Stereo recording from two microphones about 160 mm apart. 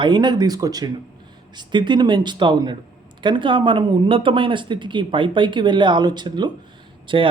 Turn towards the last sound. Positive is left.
turn(degrees=-30)  # may be behind; listen again after turning